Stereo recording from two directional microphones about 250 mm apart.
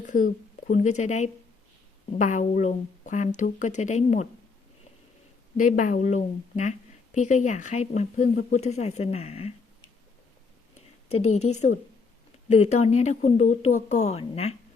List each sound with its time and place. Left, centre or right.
0.0 s a woman's voice: left
5.5 s a woman's voice: left
11.1 s a woman's voice: left